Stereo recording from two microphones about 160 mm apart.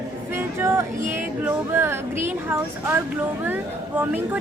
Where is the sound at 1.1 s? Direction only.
15° right (ahead or behind).